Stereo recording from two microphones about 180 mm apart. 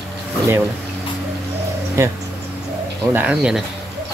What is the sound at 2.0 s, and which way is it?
Speech, 15° right (ahead or behind).